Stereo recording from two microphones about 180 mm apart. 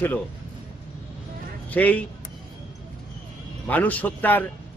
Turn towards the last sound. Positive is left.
turn(degrees=10)  # may be behind; listen again after turning